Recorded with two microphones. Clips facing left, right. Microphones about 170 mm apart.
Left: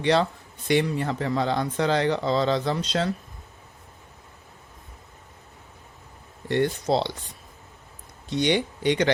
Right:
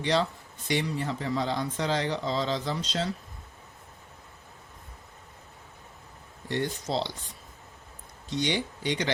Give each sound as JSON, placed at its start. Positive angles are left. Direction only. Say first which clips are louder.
{"t": 0.0, "sound": "speech", "louder": "left 5 dB", "side_deg": 60}
{"t": 6.5, "sound": "speech", "louder": "left 7 dB", "side_deg": 60}
{"t": 8.3, "sound": "speech", "louder": "left 6 dB", "side_deg": 60}